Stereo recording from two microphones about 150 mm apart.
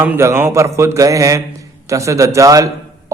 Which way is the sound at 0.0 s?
15° right (ahead or behind).